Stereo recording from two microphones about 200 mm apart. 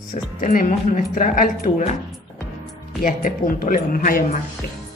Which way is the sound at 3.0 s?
40° left (ahead or behind).